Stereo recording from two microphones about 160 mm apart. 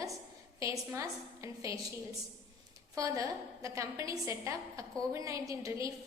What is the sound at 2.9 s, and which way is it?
A woman's voice, 20° right (ahead or behind).